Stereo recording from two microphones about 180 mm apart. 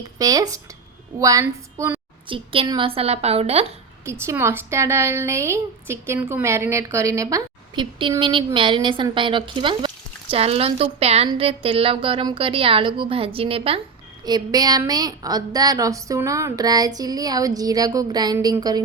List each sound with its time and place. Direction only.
0.2 s a woman's voice: 20° right (ahead or behind)
2.2 s a woman's voice: 30° right (ahead or behind)
4.0 s a woman's voice: 15° right (ahead or behind)